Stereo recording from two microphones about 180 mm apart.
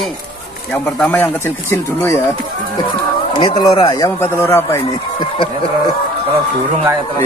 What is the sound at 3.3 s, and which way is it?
Speech, 25° left (ahead or behind).